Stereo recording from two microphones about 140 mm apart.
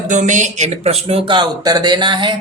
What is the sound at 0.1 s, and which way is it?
A man's voice, 60° right (ahead or behind).